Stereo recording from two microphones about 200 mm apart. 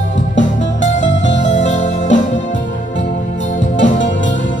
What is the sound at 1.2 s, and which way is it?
Music, 65° left (ahead or behind).